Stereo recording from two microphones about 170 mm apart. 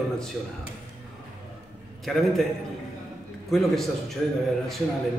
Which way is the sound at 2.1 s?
5° left (ahead or behind).